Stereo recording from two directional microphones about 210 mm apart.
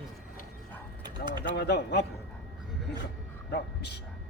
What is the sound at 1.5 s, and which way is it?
Speech, 55° left (ahead or behind).